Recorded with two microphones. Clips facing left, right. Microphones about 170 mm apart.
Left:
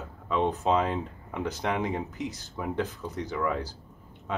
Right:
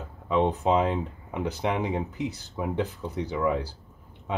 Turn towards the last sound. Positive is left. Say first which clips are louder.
# right 3 dB
turn(degrees=-10)  # may be behind; listen again after turning